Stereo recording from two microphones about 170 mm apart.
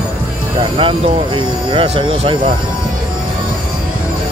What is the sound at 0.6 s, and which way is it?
Speech, 30° right (ahead or behind).